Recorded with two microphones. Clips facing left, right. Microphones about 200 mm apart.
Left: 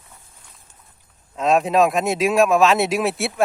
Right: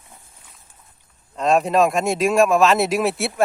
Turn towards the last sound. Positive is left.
turn(degrees=0)  # may be behind; listen again after turning